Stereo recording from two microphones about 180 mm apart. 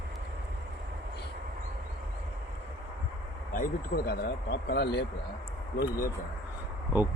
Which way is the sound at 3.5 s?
55° left (ahead or behind).